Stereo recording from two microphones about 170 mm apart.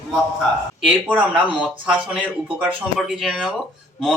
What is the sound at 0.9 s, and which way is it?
Speech, 5° right (ahead or behind).